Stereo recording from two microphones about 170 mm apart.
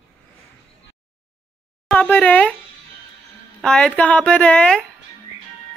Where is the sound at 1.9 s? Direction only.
10° left (ahead or behind).